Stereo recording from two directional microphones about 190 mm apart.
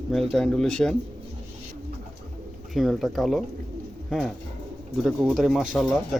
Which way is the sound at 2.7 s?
Centre (ahead or behind).